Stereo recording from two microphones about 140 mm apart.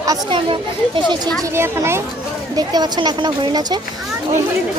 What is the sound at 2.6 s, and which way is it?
Speech, 30° right (ahead or behind).